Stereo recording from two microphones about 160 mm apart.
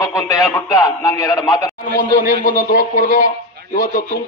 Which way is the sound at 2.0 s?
55° left (ahead or behind).